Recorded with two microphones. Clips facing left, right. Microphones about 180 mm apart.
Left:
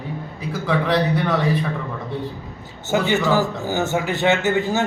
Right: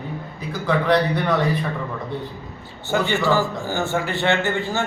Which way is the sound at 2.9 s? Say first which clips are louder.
Left 1 dB; 20° left (ahead or behind).